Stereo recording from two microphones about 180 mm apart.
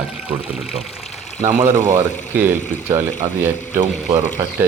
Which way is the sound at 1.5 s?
15° right (ahead or behind).